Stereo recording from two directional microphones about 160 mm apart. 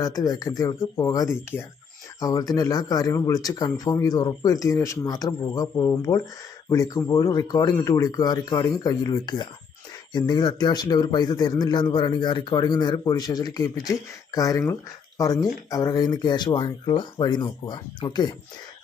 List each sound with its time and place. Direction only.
0.0 s speech: 20° left (ahead or behind)